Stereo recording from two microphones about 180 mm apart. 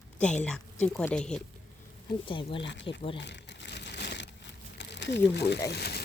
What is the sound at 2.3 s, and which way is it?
Speech, 30° left (ahead or behind).